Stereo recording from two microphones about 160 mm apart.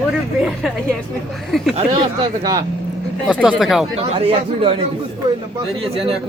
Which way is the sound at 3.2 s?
5° right (ahead or behind).